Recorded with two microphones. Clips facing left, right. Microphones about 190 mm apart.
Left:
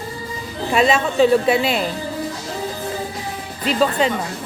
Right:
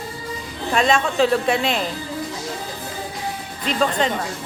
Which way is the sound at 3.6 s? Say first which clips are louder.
Left 3 dB; 5° left (ahead or behind).